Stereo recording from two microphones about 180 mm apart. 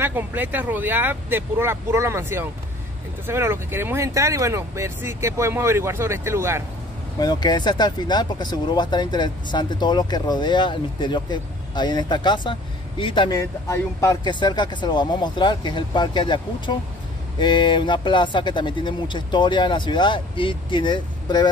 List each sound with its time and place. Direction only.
0.0 s speech: 10° right (ahead or behind)
7.2 s speech: 25° left (ahead or behind)